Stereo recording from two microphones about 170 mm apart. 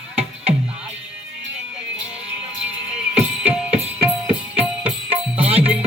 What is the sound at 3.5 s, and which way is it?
Music, 5° right (ahead or behind).